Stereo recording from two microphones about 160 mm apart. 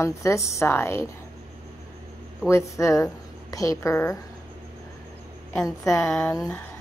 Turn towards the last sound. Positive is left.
turn(degrees=15)  # may be behind; listen again after turning